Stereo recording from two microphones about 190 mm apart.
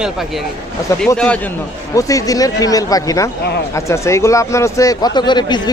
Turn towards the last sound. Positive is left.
turn(degrees=25)  # may be behind; listen again after turning